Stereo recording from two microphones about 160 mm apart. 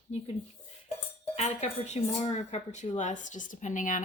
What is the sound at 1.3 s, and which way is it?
Speech, 45° left (ahead or behind).